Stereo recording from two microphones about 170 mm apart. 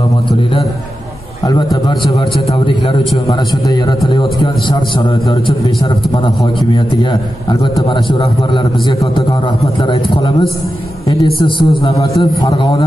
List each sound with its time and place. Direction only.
1.4 s a man's voice: 20° left (ahead or behind)